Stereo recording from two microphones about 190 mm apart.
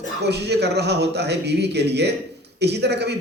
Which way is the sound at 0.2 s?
60° right (ahead or behind).